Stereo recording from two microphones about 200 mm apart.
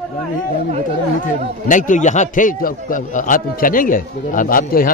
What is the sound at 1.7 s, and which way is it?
A man's voice, 40° left (ahead or behind).